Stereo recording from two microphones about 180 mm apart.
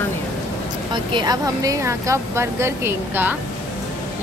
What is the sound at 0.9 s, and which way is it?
Speech, 25° right (ahead or behind).